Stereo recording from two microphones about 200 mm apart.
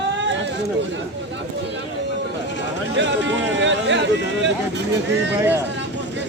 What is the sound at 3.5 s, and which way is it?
Speech, 65° right (ahead or behind).